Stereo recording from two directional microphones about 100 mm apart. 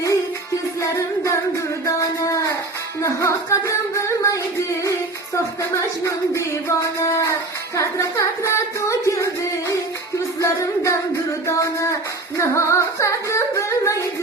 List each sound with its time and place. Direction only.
0.8 s music: 30° left (ahead or behind)
1.8 s a sound: 35° left (ahead or behind)
3.0 s music: 30° left (ahead or behind)